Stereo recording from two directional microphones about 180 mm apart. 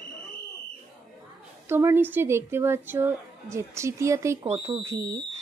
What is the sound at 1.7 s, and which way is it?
Speech, 15° right (ahead or behind).